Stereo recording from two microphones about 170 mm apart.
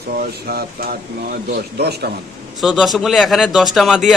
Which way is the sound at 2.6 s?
Centre (ahead or behind).